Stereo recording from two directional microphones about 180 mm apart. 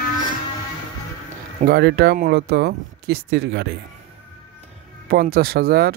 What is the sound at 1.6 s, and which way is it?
Speech, 65° right (ahead or behind).